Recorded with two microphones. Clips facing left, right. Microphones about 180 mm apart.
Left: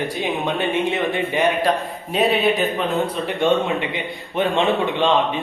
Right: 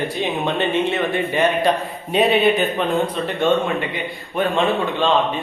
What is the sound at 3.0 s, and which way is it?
A man's voice, 15° left (ahead or behind).